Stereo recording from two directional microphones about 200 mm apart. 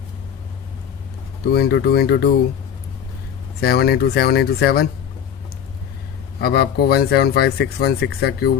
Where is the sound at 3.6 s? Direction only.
50° left (ahead or behind).